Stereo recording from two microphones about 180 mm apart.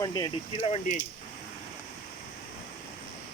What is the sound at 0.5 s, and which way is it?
Speech, 35° left (ahead or behind).